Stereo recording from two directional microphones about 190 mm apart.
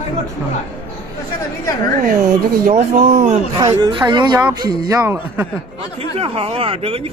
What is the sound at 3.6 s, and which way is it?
A man's voice, 25° right (ahead or behind).